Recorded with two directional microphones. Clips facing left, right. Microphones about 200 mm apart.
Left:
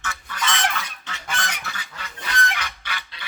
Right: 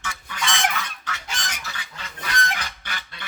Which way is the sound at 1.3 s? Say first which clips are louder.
Left 9 dB; 60° left (ahead or behind).